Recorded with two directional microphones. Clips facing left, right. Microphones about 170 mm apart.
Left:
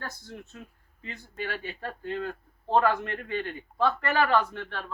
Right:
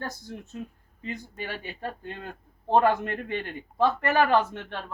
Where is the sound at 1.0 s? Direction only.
15° right (ahead or behind).